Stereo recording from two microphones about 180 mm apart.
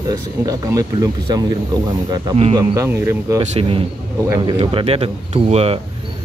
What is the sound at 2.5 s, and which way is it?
Speech, 15° right (ahead or behind).